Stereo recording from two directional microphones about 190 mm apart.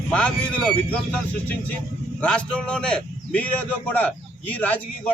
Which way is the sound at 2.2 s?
5° left (ahead or behind).